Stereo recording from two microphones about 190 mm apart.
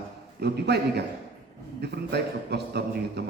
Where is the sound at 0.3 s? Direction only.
60° right (ahead or behind).